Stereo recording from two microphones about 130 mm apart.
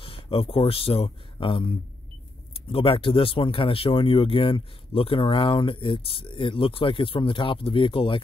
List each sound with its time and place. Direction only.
0.0 s speech: 45° left (ahead or behind)
2.7 s speech: 45° left (ahead or behind)